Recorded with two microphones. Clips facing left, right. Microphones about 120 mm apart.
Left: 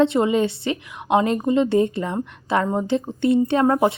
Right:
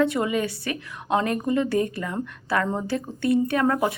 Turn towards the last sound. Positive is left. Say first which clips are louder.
# left 4 dB
turn(degrees=25)  # may be behind; listen again after turning